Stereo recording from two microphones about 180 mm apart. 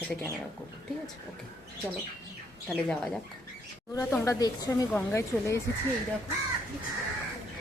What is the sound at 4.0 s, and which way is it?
Speech, 15° left (ahead or behind).